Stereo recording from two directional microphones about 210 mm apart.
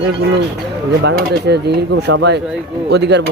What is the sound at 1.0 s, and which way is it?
Speech, 50° right (ahead or behind).